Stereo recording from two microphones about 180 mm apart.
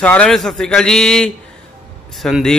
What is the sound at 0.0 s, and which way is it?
A man's voice, 5° left (ahead or behind).